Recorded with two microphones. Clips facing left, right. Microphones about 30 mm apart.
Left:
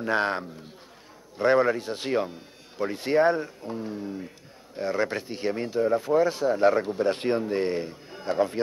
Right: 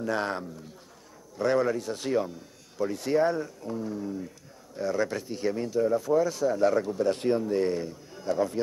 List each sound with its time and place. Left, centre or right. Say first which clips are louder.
0.0 s speech: left 4 dB; left